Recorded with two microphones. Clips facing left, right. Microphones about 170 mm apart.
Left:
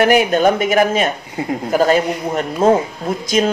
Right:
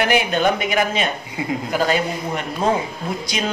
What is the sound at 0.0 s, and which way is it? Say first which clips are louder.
Speech: left 6 dB; 45° left (ahead or behind).